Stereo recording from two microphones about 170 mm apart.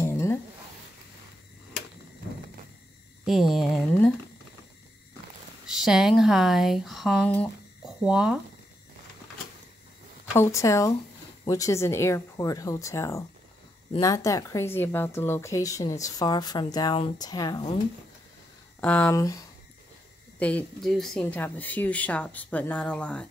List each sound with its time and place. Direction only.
0.0 s a sound: 15° left (ahead or behind)
3.3 s speech: centre (ahead or behind)
5.8 s speech: centre (ahead or behind)
7.8 s speech: 5° right (ahead or behind)
10.3 s speech: 15° left (ahead or behind)
18.8 s speech: 10° left (ahead or behind)
20.3 s speech: 10° left (ahead or behind)